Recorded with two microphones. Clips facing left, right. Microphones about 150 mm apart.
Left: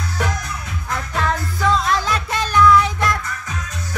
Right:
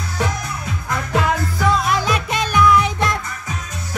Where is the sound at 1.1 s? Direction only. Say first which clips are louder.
Right 4 dB; 10° right (ahead or behind).